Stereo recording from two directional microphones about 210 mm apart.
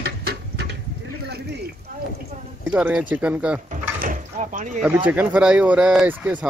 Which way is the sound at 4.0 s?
40° right (ahead or behind).